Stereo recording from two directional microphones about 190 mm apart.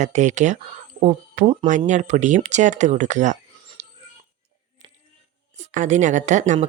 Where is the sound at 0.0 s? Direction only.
40° right (ahead or behind).